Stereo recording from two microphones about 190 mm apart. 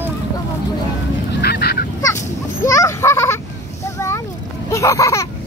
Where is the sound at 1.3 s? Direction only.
55° left (ahead or behind).